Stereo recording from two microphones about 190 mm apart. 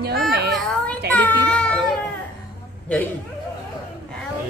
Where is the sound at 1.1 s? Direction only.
5° left (ahead or behind).